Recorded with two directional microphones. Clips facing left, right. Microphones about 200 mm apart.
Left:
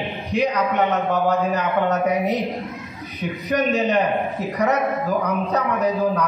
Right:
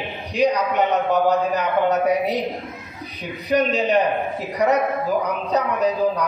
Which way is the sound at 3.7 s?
15° right (ahead or behind).